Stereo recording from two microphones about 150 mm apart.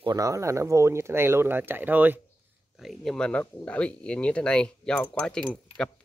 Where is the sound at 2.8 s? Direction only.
Centre (ahead or behind).